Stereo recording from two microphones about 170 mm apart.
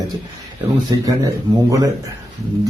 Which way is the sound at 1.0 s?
20° right (ahead or behind).